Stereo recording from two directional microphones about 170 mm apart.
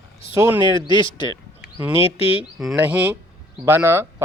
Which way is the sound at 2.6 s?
5° right (ahead or behind).